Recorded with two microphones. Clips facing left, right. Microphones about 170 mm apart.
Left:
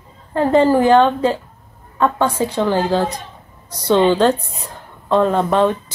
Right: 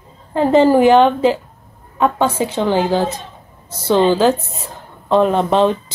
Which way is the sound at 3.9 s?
5° right (ahead or behind).